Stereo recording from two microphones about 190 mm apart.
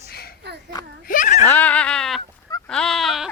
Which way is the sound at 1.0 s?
45° left (ahead or behind).